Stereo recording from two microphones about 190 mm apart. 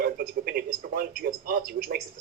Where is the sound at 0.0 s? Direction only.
50° right (ahead or behind).